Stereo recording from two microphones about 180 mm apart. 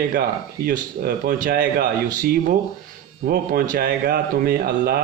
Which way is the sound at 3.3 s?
55° right (ahead or behind).